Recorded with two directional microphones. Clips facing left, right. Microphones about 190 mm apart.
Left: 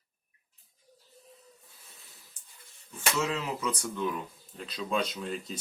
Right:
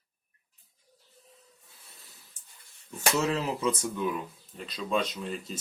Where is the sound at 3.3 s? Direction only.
35° right (ahead or behind).